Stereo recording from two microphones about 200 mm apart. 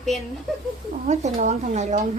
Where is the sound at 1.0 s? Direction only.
35° right (ahead or behind).